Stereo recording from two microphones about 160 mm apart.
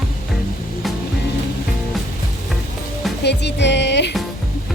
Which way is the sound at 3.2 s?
90° left.